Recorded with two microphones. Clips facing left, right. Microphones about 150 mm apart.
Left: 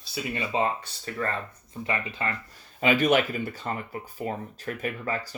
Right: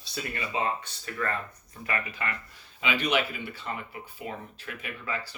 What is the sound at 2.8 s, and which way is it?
Speech, 45° left (ahead or behind).